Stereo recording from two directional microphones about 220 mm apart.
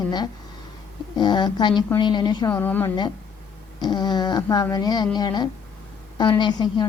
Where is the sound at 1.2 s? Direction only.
20° left (ahead or behind).